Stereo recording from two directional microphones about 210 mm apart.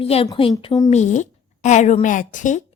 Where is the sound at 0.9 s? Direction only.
35° left (ahead or behind).